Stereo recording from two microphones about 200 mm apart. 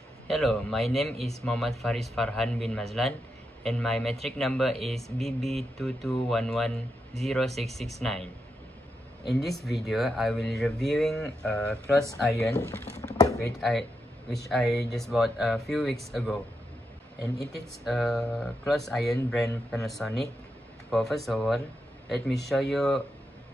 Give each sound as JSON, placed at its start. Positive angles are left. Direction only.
{"t": 0.3, "sound": "speech", "side_deg": 0}
{"t": 1.1, "sound": "speech", "side_deg": -30}
{"t": 1.4, "sound": "speech", "side_deg": 0}
{"t": 9.3, "sound": "speech", "side_deg": 0}
{"t": 12.5, "sound": "a sound", "side_deg": 15}
{"t": 13.5, "sound": "speech", "side_deg": 0}
{"t": 17.8, "sound": "speech", "side_deg": 0}